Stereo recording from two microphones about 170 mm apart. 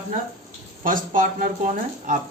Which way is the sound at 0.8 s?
50° right (ahead or behind).